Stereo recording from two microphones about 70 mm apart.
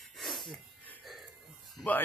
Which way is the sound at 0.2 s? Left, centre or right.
Centre.